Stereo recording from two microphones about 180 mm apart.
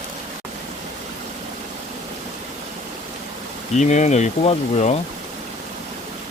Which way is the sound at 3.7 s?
40° left (ahead or behind).